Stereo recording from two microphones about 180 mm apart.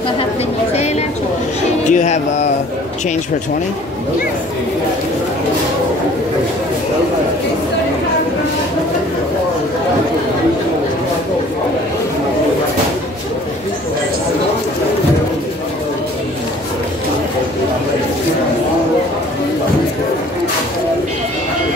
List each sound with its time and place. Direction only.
1.9 s speech: 40° left (ahead or behind)